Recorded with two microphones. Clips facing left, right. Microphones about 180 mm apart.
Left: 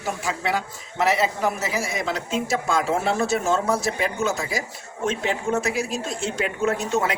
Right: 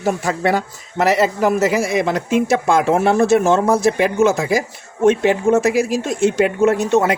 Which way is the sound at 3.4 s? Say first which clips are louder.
Right 7 dB; 90° right.